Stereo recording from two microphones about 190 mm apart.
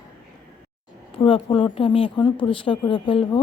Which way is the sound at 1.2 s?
25° left (ahead or behind).